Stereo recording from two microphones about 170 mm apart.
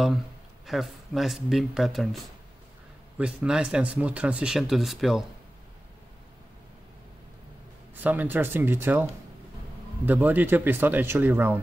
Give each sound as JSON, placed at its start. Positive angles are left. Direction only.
{"t": 0.7, "sound": "speech", "side_deg": 0}
{"t": 8.0, "sound": "speech", "side_deg": -10}
{"t": 10.0, "sound": "speech", "side_deg": -10}